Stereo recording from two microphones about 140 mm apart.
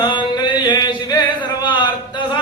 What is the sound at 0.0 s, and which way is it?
Music, 30° left (ahead or behind).